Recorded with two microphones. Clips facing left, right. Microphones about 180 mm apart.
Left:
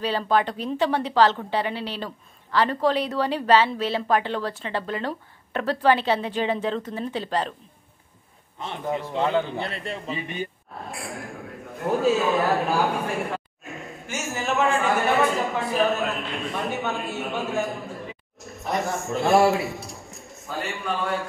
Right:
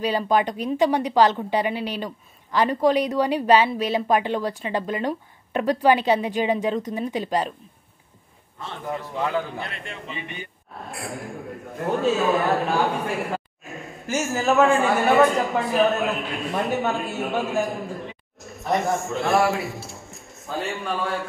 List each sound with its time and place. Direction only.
0.0 s a woman's voice: 15° right (ahead or behind)
8.5 s a man's voice: 20° left (ahead or behind)
9.7 s a man's voice: 35° left (ahead or behind)
10.9 s a man's voice: centre (ahead or behind)
13.3 s a sound: centre (ahead or behind)
15.3 s a man's voice: centre (ahead or behind)